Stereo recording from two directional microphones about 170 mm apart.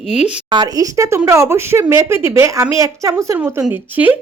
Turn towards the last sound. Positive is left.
turn(degrees=-10)  # may be behind; listen again after turning